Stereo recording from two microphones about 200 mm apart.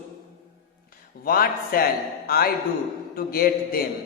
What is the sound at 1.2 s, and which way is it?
A man's voice, 45° left (ahead or behind).